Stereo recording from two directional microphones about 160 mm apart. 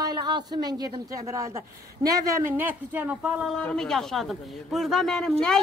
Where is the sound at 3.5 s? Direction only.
5° left (ahead or behind).